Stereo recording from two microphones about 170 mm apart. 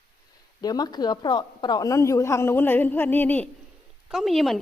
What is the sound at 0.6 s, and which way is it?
A woman's voice, 25° left (ahead or behind).